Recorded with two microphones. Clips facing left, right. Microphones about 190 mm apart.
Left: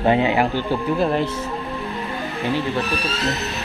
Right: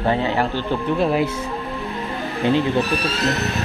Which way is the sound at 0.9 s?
Centre (ahead or behind).